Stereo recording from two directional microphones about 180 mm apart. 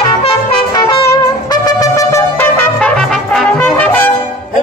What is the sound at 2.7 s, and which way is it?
Trumpet, 5° left (ahead or behind).